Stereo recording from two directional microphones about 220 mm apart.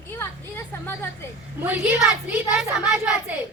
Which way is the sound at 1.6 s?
10° right (ahead or behind).